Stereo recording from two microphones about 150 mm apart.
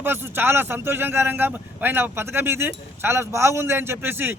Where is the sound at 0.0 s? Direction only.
15° right (ahead or behind).